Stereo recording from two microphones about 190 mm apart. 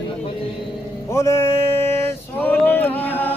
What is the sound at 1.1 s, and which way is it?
Music, 15° left (ahead or behind).